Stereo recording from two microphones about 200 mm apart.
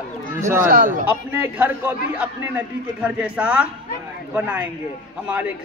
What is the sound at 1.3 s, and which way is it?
A man's voice, 10° right (ahead or behind).